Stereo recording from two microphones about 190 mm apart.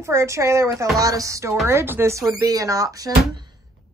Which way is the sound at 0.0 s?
15° right (ahead or behind).